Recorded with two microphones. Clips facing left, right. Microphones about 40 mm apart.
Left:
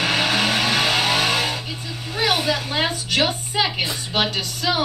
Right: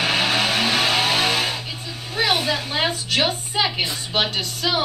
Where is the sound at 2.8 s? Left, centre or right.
Right.